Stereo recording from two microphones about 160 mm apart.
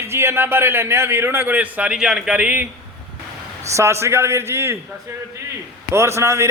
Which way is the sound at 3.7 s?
15° right (ahead or behind).